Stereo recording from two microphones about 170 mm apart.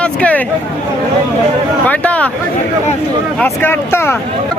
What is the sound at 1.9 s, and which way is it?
Speech, 10° left (ahead or behind).